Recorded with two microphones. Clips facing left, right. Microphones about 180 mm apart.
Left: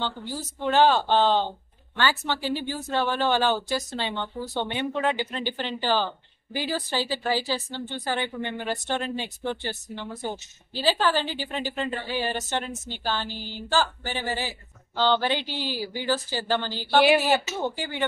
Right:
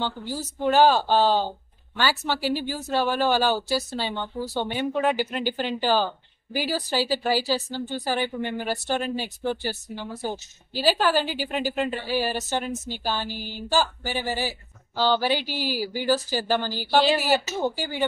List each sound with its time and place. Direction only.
0.0 s speech: 10° right (ahead or behind)
7.7 s a woman's voice: 40° right (ahead or behind)
8.0 s speech: 10° right (ahead or behind)
17.0 s speech: 15° left (ahead or behind)
17.6 s speech: 10° right (ahead or behind)